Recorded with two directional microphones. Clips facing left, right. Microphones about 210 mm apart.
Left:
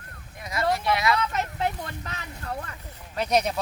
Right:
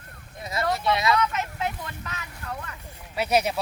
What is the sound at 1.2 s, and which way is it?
Vehicle, 35° left (ahead or behind).